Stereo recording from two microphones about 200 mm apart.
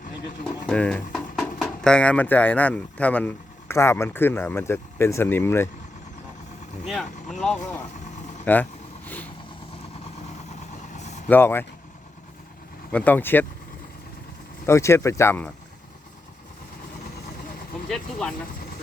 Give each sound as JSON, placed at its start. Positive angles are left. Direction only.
{"t": 0.7, "sound": "speech", "side_deg": 5}
{"t": 6.8, "sound": "speech", "side_deg": 0}
{"t": 9.0, "sound": "vehicle", "side_deg": 10}
{"t": 10.9, "sound": "vehicle", "side_deg": 35}
{"t": 11.3, "sound": "speech", "side_deg": 10}
{"t": 12.9, "sound": "speech", "side_deg": 5}
{"t": 14.7, "sound": "speech", "side_deg": 15}
{"t": 17.8, "sound": "speech", "side_deg": 5}